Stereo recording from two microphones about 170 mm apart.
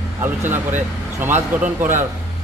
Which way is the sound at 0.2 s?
10° right (ahead or behind).